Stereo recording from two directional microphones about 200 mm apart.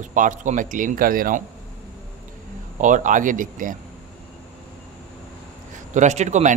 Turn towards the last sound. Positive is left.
turn(degrees=-35)  # may be behind; listen again after turning